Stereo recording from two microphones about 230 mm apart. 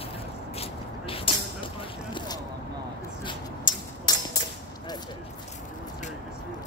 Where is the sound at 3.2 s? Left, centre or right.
Centre.